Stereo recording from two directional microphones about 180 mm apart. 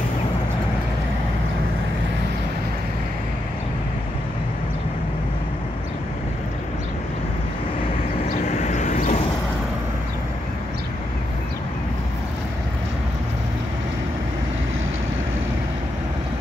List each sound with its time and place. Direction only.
8.3 s vehicle: 40° left (ahead or behind)